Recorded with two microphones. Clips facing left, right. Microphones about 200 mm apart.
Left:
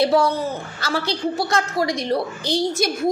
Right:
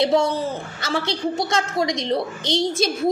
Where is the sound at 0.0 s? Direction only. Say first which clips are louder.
Left 1 dB; 25° right (ahead or behind).